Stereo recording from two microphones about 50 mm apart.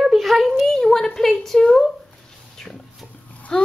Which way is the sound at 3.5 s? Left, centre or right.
Centre.